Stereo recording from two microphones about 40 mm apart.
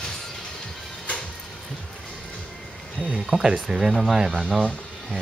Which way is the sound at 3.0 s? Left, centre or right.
Centre.